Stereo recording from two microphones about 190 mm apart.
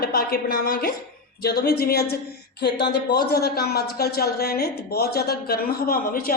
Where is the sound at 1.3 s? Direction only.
55° left (ahead or behind).